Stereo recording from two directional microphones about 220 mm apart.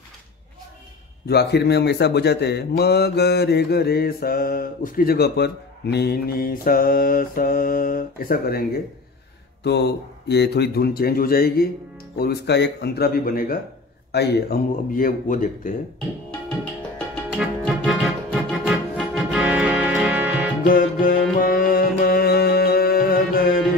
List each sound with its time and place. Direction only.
1.2 s speech: 50° left (ahead or behind)
17.4 s music: centre (ahead or behind)
20.6 s music: 40° left (ahead or behind)